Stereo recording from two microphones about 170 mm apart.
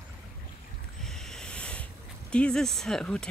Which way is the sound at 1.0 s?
5° left (ahead or behind).